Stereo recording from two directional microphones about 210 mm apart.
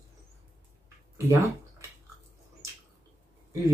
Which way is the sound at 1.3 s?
15° right (ahead or behind).